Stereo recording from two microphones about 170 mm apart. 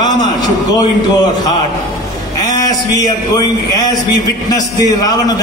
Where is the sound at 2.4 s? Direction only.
20° left (ahead or behind).